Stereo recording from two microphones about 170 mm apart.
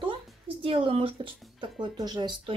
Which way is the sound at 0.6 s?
30° right (ahead or behind).